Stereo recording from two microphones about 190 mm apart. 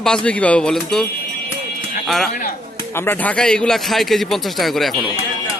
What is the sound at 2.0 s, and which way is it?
A man's voice, centre (ahead or behind).